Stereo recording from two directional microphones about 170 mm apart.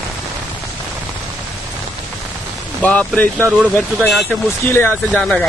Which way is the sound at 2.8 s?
5° left (ahead or behind).